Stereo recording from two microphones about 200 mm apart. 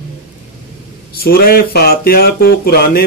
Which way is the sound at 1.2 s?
50° left (ahead or behind).